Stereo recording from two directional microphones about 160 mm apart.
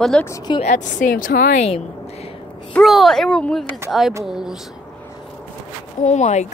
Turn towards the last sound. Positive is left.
turn(degrees=45)  # may be behind; listen again after turning